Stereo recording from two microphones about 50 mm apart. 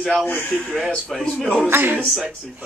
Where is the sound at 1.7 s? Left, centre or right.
Right.